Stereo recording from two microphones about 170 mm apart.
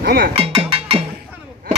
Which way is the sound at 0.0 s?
65° right (ahead or behind).